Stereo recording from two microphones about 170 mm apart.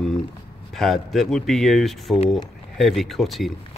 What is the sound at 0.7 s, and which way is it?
Speech, centre (ahead or behind).